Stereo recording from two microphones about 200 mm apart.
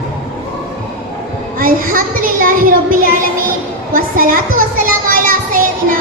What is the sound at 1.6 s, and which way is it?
A child's voice, 45° right (ahead or behind).